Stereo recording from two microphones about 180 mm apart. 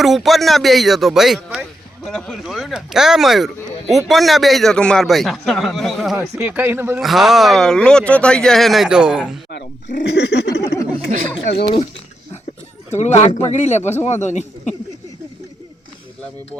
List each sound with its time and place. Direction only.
0.0 s speech: centre (ahead or behind)
7.0 s speech: centre (ahead or behind)
10.0 s a sound: 70° left (ahead or behind)
11.5 s speech: 30° left (ahead or behind)
13.0 s speech: 40° left (ahead or behind)